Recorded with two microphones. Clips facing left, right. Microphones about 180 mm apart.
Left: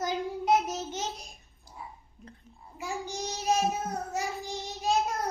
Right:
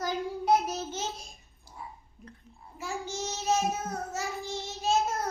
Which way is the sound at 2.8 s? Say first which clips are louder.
Even; 15° left (ahead or behind).